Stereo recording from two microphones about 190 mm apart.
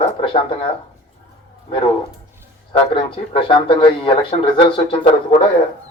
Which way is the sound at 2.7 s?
25° left (ahead or behind).